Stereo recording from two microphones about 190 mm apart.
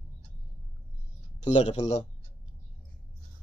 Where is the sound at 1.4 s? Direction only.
35° left (ahead or behind).